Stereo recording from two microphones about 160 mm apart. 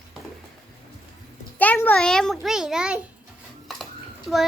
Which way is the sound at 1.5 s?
10° left (ahead or behind).